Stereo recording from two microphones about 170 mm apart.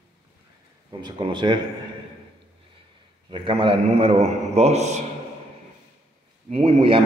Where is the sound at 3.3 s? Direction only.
30° right (ahead or behind).